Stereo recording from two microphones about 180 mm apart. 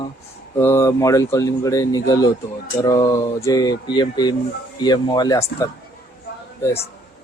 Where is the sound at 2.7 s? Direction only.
20° left (ahead or behind).